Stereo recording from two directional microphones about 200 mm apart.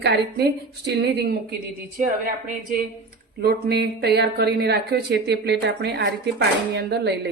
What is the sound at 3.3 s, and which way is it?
Speech, 50° right (ahead or behind).